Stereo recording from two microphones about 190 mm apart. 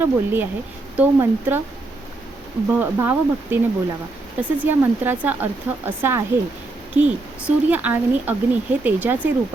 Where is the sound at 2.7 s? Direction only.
10° right (ahead or behind).